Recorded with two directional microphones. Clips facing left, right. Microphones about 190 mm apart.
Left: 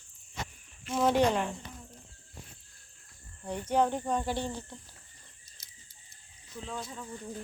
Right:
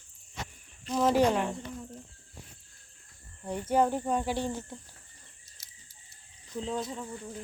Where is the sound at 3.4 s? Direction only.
5° right (ahead or behind).